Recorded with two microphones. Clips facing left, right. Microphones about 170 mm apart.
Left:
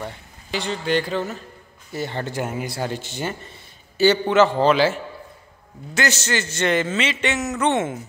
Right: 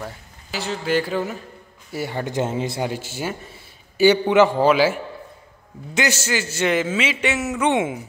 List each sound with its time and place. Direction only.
0.0 s a man's voice: 5° right (ahead or behind)
2.3 s speech: 25° right (ahead or behind)
2.9 s a man's voice: 10° right (ahead or behind)